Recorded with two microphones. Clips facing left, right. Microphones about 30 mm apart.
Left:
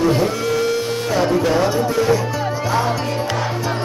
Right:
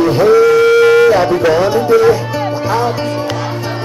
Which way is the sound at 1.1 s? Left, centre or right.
Right.